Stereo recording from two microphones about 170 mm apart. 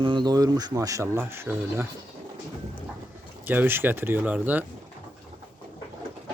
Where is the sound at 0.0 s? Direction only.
30° right (ahead or behind).